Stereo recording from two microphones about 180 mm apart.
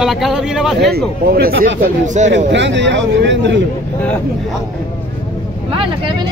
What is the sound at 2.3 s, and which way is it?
A man's voice, 80° right.